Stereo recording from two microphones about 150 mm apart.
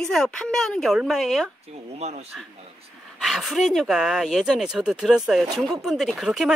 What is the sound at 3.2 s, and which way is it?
Speech, centre (ahead or behind).